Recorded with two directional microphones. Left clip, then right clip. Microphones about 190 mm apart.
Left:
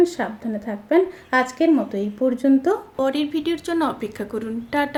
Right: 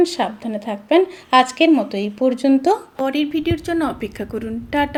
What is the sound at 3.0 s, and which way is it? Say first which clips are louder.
A woman's voice: right 2 dB; 10° right (ahead or behind).